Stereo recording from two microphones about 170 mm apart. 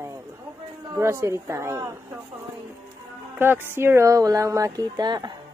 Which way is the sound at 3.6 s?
15° right (ahead or behind).